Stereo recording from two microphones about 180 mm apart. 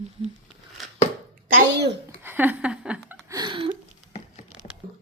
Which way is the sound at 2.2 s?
10° right (ahead or behind).